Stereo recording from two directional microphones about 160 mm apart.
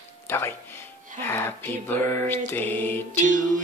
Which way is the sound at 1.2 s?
15° left (ahead or behind).